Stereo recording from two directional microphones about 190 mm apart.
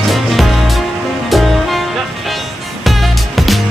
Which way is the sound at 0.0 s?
Centre (ahead or behind).